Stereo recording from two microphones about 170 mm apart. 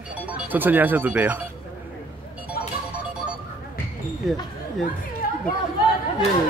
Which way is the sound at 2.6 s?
60° left (ahead or behind).